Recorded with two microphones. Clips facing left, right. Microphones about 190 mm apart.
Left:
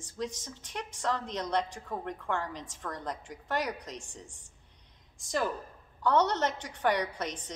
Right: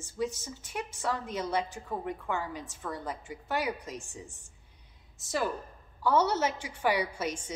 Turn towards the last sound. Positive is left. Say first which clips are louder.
# right 1 dB
turn(degrees=-10)  # may be behind; listen again after turning